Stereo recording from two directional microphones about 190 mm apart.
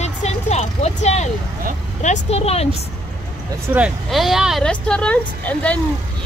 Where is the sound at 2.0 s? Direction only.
35° left (ahead or behind).